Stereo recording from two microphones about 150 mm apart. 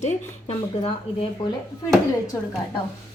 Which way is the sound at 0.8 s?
35° left (ahead or behind).